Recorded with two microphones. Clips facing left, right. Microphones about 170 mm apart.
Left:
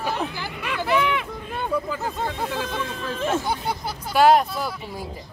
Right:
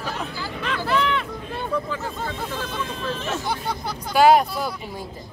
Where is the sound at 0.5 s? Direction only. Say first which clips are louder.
Left 1 dB; 10° left (ahead or behind).